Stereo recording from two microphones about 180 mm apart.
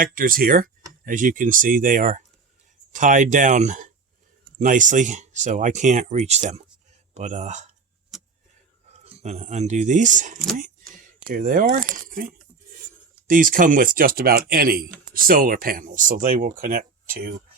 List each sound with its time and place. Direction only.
0.0 s speech: 50° right (ahead or behind)
8.9 s speech: 40° right (ahead or behind)